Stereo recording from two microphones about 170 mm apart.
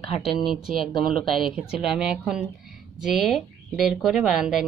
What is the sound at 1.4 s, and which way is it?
Speech, 5° right (ahead or behind).